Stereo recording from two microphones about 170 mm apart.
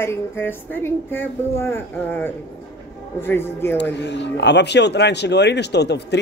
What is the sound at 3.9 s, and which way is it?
Speech, 90° left.